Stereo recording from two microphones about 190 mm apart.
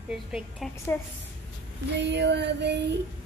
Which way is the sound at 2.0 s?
65° right (ahead or behind).